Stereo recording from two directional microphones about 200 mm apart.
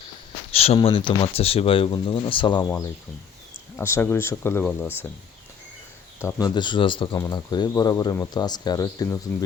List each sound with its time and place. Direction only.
0.5 s speech: 30° left (ahead or behind)
3.8 s speech: 10° left (ahead or behind)
6.1 s speech: 15° left (ahead or behind)